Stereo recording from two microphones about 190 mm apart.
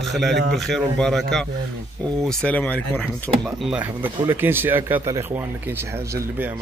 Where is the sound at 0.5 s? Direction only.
Centre (ahead or behind).